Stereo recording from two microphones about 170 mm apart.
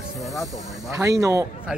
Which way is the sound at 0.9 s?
20° right (ahead or behind).